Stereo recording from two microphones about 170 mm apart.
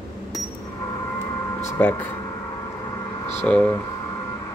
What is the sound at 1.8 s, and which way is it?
Speech, 10° left (ahead or behind).